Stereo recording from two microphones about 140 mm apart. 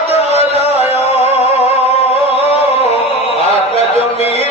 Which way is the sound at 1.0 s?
50° left (ahead or behind).